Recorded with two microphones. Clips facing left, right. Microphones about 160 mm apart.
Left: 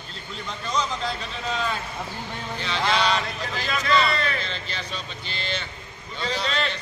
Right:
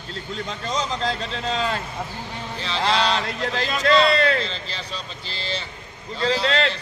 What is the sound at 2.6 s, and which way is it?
Speech, 30° right (ahead or behind).